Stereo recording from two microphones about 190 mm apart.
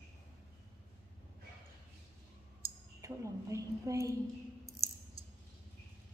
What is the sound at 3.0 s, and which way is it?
A woman's voice, 15° right (ahead or behind).